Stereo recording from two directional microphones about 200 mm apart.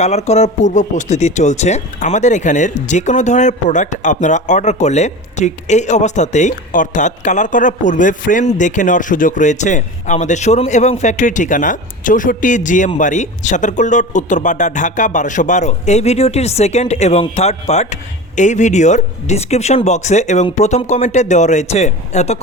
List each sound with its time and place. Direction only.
0.0 s speech: 35° left (ahead or behind)